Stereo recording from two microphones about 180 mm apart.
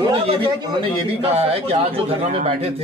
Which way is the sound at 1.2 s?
35° right (ahead or behind).